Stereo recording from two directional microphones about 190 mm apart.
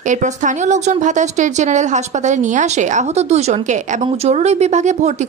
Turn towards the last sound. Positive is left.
turn(degrees=-35)  # may be behind; listen again after turning